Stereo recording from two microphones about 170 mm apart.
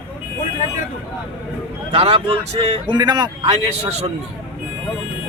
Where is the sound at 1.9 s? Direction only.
35° right (ahead or behind).